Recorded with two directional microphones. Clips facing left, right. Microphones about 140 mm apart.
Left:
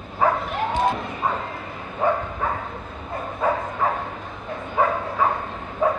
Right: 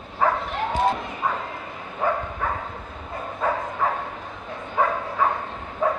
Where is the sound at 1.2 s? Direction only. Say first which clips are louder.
Left 1 dB; 30° left (ahead or behind).